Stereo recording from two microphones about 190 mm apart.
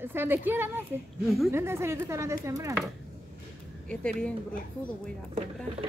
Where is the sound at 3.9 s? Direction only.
5° left (ahead or behind).